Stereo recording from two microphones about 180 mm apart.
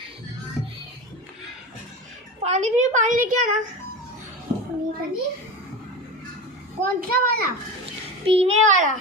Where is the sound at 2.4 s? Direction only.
40° right (ahead or behind).